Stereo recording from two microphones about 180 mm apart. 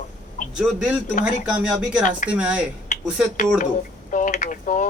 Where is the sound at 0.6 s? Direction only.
5° right (ahead or behind).